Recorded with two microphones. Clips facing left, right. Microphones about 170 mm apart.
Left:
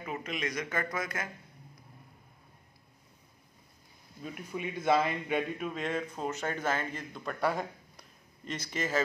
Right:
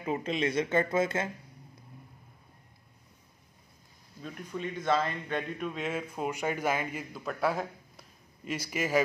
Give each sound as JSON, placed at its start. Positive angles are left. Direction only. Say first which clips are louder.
{"t": 0.0, "sound": "speech", "louder": "right 6 dB", "side_deg": -30}
{"t": 4.2, "sound": "a man's voice", "louder": "right 1 dB", "side_deg": 10}